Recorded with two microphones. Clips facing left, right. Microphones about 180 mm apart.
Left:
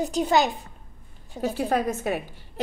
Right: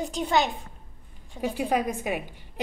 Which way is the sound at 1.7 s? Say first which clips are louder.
Left 1 dB; 15° right (ahead or behind).